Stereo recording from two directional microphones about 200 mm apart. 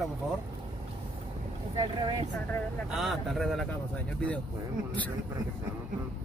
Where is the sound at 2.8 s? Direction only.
Centre (ahead or behind).